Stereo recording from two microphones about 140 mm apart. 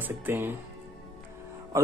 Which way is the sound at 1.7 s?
20° right (ahead or behind).